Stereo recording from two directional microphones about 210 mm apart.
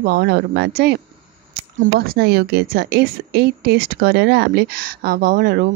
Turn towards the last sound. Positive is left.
turn(degrees=-45)  # may be behind; listen again after turning